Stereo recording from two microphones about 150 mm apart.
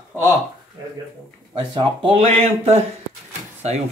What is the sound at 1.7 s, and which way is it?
Speech, 35° right (ahead or behind).